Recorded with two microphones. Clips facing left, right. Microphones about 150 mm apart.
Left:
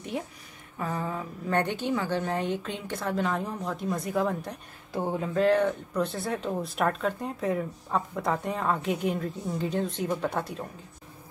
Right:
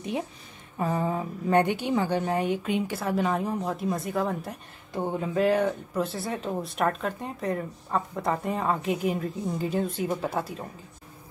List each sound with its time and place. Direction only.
0.7 s a woman's voice: 20° right (ahead or behind); by 5.3 s centre (ahead or behind)
5.3 s speech: 10° right (ahead or behind)